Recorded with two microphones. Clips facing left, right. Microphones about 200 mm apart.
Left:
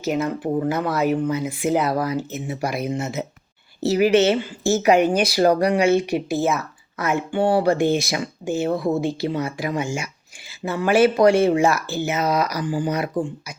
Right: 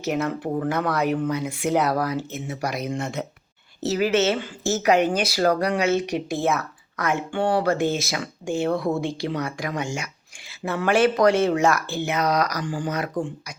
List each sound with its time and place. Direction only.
0.0 s speech: centre (ahead or behind)